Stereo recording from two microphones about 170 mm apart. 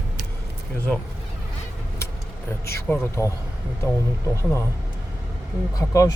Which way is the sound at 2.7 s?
15° left (ahead or behind).